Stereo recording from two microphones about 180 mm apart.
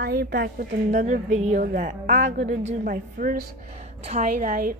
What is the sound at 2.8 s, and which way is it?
A woman's voice, 55° right (ahead or behind).